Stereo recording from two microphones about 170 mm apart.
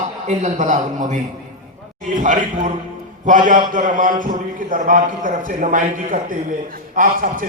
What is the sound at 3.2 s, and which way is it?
A man's voice, 50° right (ahead or behind).